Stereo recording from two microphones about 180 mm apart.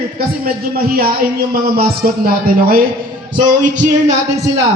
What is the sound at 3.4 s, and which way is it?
Music, 45° right (ahead or behind).